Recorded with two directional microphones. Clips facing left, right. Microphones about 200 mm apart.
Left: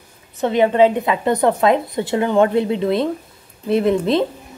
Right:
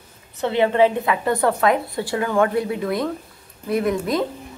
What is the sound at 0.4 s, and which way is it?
Speech, 15° left (ahead or behind).